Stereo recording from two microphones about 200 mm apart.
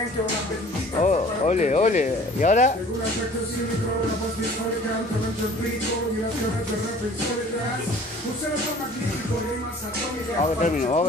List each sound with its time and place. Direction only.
1.0 s speech: 35° left (ahead or behind)
10.4 s speech: 35° left (ahead or behind)